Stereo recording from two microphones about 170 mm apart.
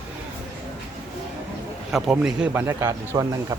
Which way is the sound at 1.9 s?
5° right (ahead or behind).